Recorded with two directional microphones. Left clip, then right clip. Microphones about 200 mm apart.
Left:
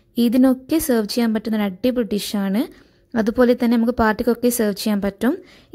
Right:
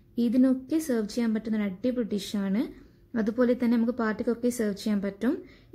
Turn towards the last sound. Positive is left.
turn(degrees=40)  # may be behind; listen again after turning